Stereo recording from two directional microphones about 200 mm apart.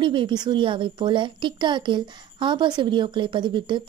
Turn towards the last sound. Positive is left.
turn(degrees=-25)  # may be behind; listen again after turning